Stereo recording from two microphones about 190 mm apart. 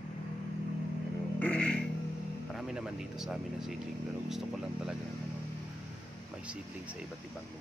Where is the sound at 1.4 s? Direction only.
5° left (ahead or behind).